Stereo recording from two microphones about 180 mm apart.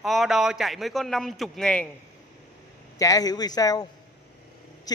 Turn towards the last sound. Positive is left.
turn(degrees=20)  # may be behind; listen again after turning